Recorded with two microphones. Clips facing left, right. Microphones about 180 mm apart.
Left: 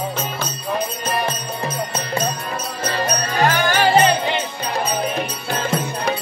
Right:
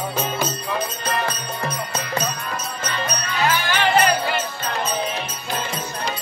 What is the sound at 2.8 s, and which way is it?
Music, 35° left (ahead or behind).